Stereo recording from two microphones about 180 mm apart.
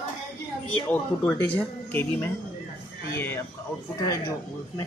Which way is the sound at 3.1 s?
10° left (ahead or behind).